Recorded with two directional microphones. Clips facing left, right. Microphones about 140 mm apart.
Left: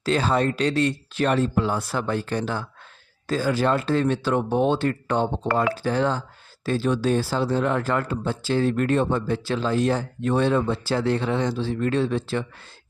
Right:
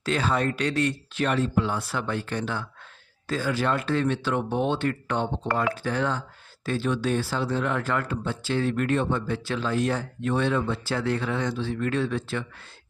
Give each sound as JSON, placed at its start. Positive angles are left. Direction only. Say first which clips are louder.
{"t": 0.0, "sound": "speech", "louder": "left 3 dB", "side_deg": 35}